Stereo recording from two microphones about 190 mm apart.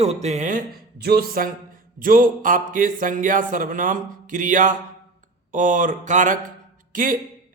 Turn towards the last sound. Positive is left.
turn(degrees=-45)  # may be behind; listen again after turning